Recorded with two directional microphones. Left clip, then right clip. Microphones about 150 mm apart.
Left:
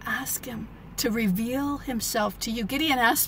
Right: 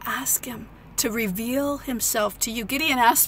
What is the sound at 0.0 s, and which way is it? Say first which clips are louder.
A woman's voice: right 3 dB; 20° right (ahead or behind).